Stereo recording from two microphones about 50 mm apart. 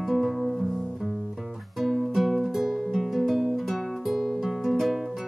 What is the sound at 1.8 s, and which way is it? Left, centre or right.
Music, centre.